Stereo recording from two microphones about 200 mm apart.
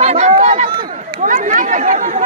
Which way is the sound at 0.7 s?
25° right (ahead or behind).